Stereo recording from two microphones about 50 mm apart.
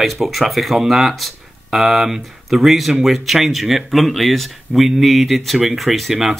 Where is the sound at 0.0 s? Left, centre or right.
Centre.